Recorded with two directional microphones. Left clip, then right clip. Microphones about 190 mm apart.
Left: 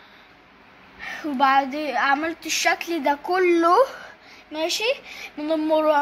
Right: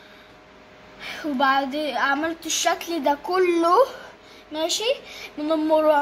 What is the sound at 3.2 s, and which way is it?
Speech, 5° left (ahead or behind).